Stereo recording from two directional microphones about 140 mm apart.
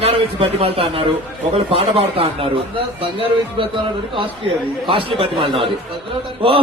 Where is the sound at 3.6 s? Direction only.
35° right (ahead or behind).